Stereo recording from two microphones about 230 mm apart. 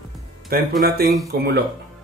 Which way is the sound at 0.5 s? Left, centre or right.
Right.